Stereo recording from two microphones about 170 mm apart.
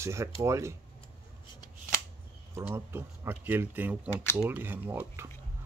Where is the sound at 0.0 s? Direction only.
15° right (ahead or behind).